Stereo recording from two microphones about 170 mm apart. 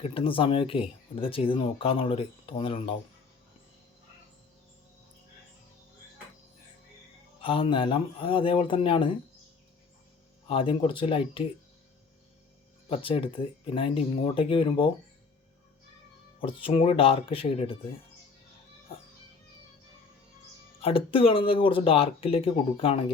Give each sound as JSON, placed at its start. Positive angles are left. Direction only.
{"t": 0.0, "sound": "speech", "side_deg": 35}
{"t": 7.4, "sound": "speech", "side_deg": 30}
{"t": 10.5, "sound": "speech", "side_deg": 30}
{"t": 12.9, "sound": "speech", "side_deg": 30}
{"t": 16.6, "sound": "speech", "side_deg": 35}
{"t": 20.8, "sound": "speech", "side_deg": 30}